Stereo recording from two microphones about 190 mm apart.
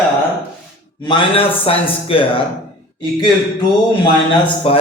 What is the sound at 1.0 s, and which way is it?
A man's voice, 30° left (ahead or behind).